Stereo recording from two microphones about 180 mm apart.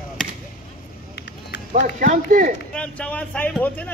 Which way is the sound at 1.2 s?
70° left (ahead or behind).